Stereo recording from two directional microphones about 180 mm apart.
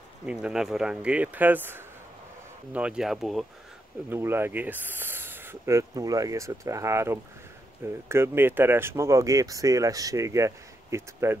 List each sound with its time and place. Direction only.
0.3 s speech: 5° right (ahead or behind)
4.1 s speech: 15° right (ahead or behind)